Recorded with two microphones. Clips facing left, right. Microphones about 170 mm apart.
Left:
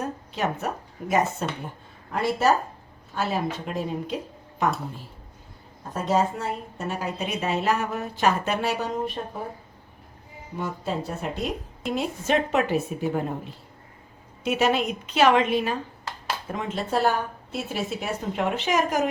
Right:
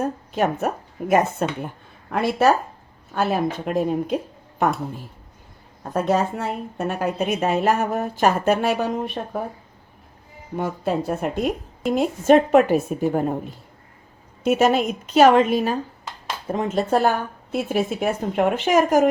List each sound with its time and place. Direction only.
0.0 s speech: 50° right (ahead or behind)
3.2 s speech: 55° right (ahead or behind)
5.9 s a woman's voice: 60° right (ahead or behind)
10.6 s a woman's voice: 55° right (ahead or behind)